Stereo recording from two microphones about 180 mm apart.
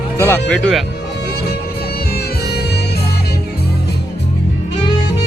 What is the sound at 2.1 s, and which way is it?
Music, 65° left (ahead or behind).